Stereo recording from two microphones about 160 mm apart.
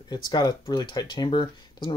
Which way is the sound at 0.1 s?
25° left (ahead or behind).